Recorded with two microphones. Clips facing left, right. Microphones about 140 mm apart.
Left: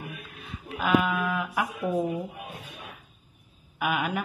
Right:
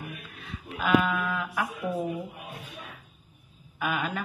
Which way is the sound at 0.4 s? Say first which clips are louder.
Left 1 dB; 10° left (ahead or behind).